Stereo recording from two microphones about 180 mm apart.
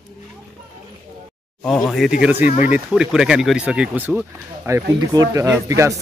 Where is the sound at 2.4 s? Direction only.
40° left (ahead or behind).